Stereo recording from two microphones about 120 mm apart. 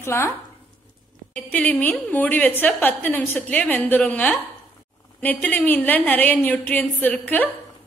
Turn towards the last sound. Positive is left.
turn(degrees=10)  # may be behind; listen again after turning